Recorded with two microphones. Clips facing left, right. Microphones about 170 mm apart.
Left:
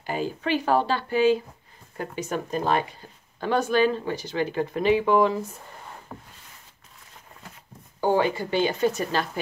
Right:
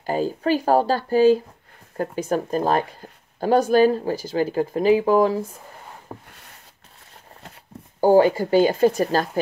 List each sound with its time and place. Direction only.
0.0 s speech: 40° right (ahead or behind)
8.0 s speech: 40° right (ahead or behind)